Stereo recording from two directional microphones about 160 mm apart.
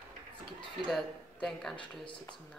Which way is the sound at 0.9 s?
5° left (ahead or behind).